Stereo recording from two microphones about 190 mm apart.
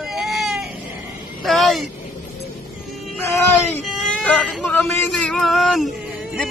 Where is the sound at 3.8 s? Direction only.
5° left (ahead or behind).